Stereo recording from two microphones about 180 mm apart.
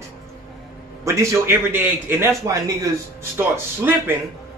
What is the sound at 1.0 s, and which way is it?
A man's voice, 15° right (ahead or behind).